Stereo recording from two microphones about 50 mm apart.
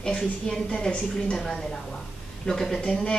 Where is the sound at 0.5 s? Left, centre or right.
Centre.